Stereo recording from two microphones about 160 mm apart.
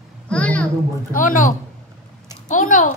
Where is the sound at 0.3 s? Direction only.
5° left (ahead or behind).